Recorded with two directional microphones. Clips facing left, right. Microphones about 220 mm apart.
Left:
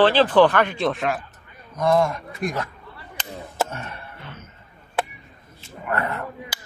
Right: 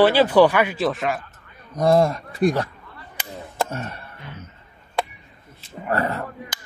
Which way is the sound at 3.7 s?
35° right (ahead or behind).